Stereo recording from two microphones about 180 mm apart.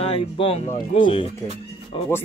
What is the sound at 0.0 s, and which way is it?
Speech, 30° left (ahead or behind).